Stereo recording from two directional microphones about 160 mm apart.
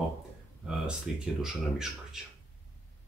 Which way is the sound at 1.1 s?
5° right (ahead or behind).